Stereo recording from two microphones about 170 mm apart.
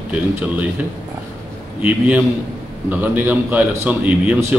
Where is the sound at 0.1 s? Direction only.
10° right (ahead or behind).